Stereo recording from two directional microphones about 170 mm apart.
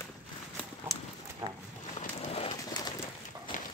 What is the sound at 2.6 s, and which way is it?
Bird, 20° left (ahead or behind).